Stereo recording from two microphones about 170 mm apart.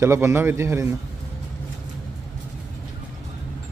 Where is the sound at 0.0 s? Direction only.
15° right (ahead or behind).